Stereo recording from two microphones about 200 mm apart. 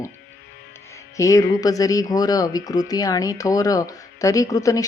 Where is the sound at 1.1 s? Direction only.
15° left (ahead or behind).